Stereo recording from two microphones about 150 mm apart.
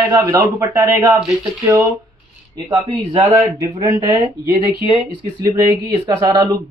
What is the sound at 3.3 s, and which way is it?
Speech, 20° right (ahead or behind).